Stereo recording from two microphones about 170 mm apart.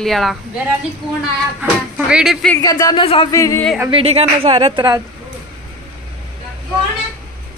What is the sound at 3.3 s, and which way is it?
Speech, 20° left (ahead or behind).